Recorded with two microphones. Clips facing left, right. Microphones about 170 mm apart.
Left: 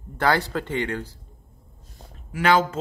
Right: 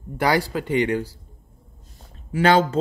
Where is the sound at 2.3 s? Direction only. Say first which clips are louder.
Right 3 dB; 30° right (ahead or behind).